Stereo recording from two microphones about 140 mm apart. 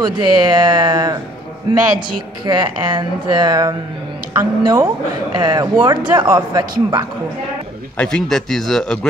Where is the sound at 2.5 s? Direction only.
35° right (ahead or behind).